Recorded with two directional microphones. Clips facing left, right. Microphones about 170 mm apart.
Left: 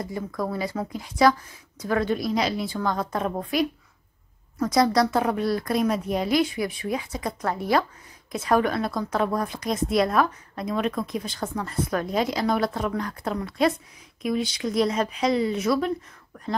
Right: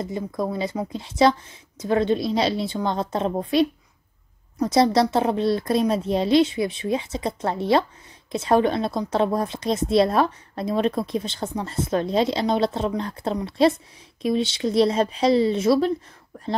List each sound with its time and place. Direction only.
0.0 s a woman's voice: 20° right (ahead or behind)